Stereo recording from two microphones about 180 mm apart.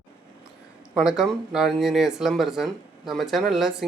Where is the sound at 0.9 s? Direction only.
Centre (ahead or behind).